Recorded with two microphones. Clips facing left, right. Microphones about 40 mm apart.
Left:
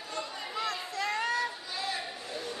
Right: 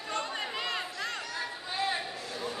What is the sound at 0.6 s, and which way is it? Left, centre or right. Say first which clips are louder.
Chatter: left 1 dB; right.